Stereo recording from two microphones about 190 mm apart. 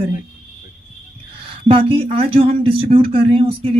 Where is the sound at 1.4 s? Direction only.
30° right (ahead or behind).